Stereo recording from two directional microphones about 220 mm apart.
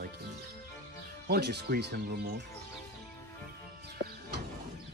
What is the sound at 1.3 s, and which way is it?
Speech, 45° right (ahead or behind).